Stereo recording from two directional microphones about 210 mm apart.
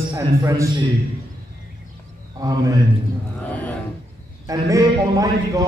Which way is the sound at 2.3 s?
15° right (ahead or behind).